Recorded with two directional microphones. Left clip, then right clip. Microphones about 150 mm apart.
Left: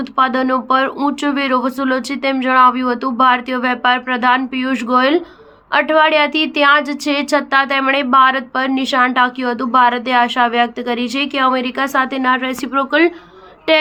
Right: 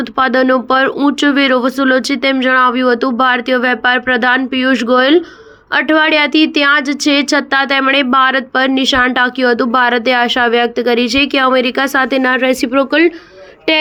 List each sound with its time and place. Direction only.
0.0 s a woman's voice: 30° right (ahead or behind)